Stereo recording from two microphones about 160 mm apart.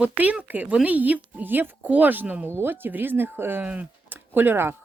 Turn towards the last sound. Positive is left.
turn(degrees=-15)  # may be behind; listen again after turning